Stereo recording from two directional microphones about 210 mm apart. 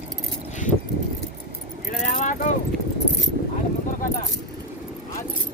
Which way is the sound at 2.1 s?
35° left (ahead or behind).